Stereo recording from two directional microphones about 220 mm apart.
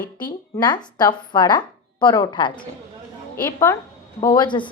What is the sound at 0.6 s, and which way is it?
A woman's voice, 20° left (ahead or behind).